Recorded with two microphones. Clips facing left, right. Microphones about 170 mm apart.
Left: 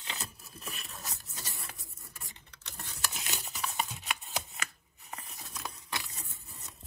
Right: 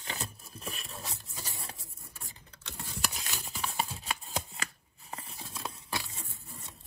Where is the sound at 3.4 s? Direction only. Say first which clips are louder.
Right 2 dB; 35° right (ahead or behind).